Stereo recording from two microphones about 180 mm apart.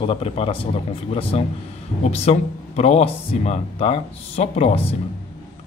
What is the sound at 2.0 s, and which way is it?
Speech, 35° left (ahead or behind).